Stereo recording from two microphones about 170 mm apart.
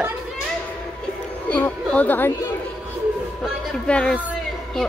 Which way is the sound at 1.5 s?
10° left (ahead or behind).